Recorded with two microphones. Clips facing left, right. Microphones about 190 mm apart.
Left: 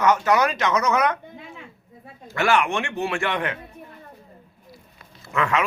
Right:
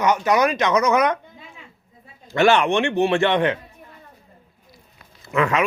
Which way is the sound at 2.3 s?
20° right (ahead or behind).